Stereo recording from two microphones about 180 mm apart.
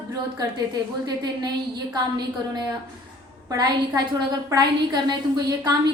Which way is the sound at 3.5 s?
20° right (ahead or behind).